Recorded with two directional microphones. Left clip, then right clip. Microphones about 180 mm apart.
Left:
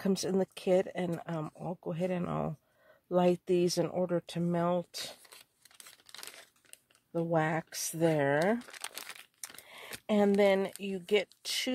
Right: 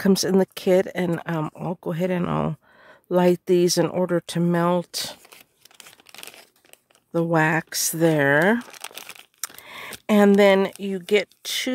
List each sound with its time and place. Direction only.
0.0 s speech: 45° right (ahead or behind)
5.3 s crumpling: 20° right (ahead or behind)
7.1 s speech: 50° right (ahead or behind)
8.7 s crumpling: 15° right (ahead or behind)
9.6 s camera: 45° right (ahead or behind)
10.0 s speech: 45° right (ahead or behind)